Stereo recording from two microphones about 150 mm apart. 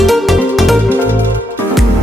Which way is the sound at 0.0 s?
Centre (ahead or behind).